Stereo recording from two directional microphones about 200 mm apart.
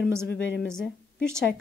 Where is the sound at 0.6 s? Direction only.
5° left (ahead or behind).